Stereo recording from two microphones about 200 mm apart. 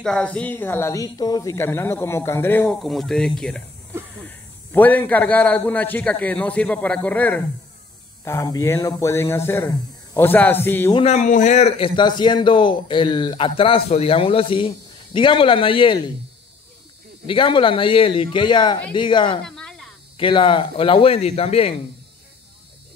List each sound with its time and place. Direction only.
0.0 s speech: 5° left (ahead or behind)
10.9 s a man's voice: 30° left (ahead or behind)
17.3 s a man's voice: 25° left (ahead or behind)
19.4 s a sound: 5° left (ahead or behind)
20.2 s a man's voice: 25° left (ahead or behind)